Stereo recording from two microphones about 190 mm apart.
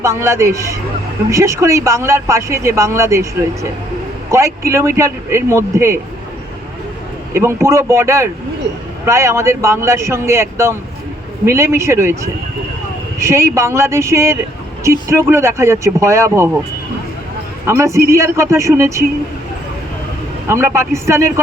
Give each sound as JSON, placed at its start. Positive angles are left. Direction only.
{"t": 0.0, "sound": "speech", "side_deg": -15}
{"t": 7.3, "sound": "speech", "side_deg": -15}
{"t": 17.7, "sound": "speech", "side_deg": -15}
{"t": 20.5, "sound": "speech", "side_deg": -15}